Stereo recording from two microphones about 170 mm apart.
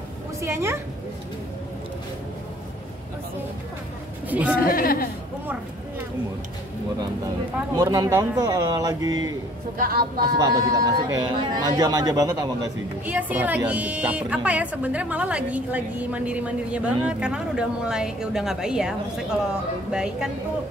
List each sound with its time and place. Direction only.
0.4 s a woman's voice: 15° right (ahead or behind)
4.3 s a woman's voice: 10° right (ahead or behind)
4.6 s a woman's voice: 60° left (ahead or behind)
7.7 s speech: 25° right (ahead or behind)
9.8 s speech: 60° right (ahead or behind)
10.3 s speech: 25° right (ahead or behind)
13.0 s a woman's voice: 10° right (ahead or behind)